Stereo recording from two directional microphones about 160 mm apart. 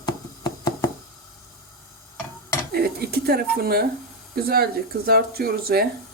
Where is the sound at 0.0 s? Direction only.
25° left (ahead or behind).